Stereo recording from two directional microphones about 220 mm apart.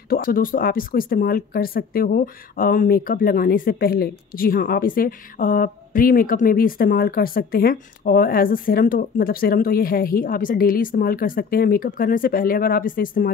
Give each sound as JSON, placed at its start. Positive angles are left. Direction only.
{"t": 0.1, "sound": "speech", "side_deg": 40}